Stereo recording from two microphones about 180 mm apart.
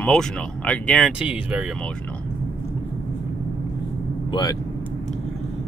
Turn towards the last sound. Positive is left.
turn(degrees=25)  # may be behind; listen again after turning